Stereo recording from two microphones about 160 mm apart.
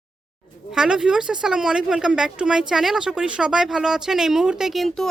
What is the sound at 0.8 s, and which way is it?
Speech, 5° right (ahead or behind).